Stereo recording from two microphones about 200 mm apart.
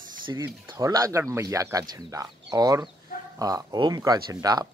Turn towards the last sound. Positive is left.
turn(degrees=-20)  # may be behind; listen again after turning